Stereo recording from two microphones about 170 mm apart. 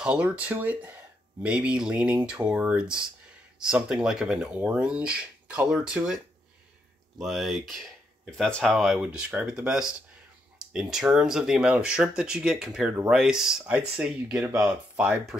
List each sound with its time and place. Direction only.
0.0 s speech: 5° right (ahead or behind)
7.2 s speech: centre (ahead or behind)